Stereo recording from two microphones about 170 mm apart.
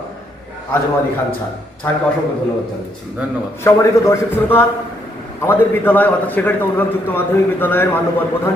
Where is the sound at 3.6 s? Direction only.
15° left (ahead or behind).